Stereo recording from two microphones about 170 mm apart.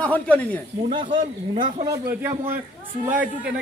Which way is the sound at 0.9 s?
30° right (ahead or behind).